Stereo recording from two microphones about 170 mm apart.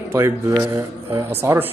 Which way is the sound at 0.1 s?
15° right (ahead or behind).